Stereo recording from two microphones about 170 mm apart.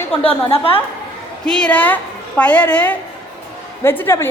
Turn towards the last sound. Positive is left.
turn(degrees=15)  # may be behind; listen again after turning